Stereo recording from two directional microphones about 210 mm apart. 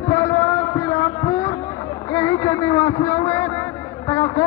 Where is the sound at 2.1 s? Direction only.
15° left (ahead or behind).